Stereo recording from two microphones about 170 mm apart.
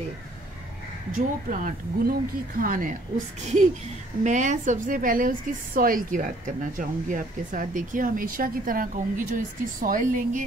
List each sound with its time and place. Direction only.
1.1 s a woman's voice: 50° right (ahead or behind)
4.2 s a woman's voice: 45° right (ahead or behind)